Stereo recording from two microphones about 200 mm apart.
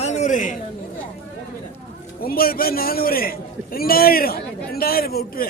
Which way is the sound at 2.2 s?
45° left (ahead or behind).